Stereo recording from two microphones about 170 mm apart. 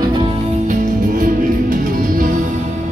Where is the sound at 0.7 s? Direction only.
55° right (ahead or behind).